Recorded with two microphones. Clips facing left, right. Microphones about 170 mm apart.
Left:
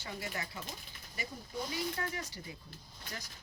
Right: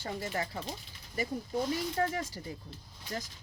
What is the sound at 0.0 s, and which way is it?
Speech, 45° right (ahead or behind).